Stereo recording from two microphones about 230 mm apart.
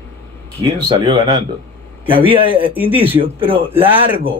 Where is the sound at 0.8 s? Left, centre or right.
Centre.